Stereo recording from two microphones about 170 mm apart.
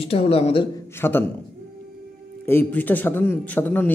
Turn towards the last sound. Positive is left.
turn(degrees=10)  # may be behind; listen again after turning